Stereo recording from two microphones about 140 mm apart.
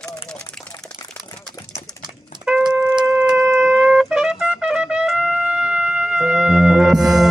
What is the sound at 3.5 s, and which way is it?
Trumpet, centre (ahead or behind).